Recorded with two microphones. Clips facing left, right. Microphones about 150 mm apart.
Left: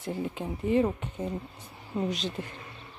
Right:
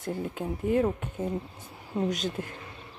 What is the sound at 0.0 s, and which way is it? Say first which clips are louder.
Speech: right 1 dB; centre (ahead or behind).